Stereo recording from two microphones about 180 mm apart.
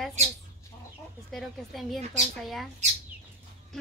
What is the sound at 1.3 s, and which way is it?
Speech, centre (ahead or behind).